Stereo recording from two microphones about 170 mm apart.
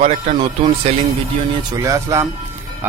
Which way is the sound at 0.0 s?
40° right (ahead or behind).